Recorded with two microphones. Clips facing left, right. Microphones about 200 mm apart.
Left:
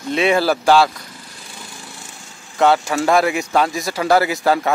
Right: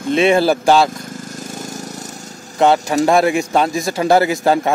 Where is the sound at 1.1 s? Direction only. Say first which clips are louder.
Right 11 dB; 45° right (ahead or behind).